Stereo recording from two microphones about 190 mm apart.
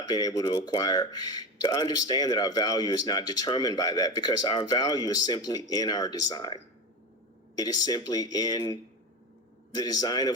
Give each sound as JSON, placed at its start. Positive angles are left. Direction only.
{"t": 0.0, "sound": "speech", "side_deg": 20}